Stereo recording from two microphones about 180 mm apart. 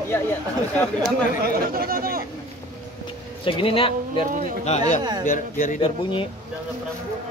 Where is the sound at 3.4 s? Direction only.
30° left (ahead or behind).